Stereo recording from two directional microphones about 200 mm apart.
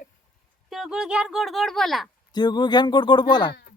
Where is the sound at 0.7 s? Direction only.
Centre (ahead or behind).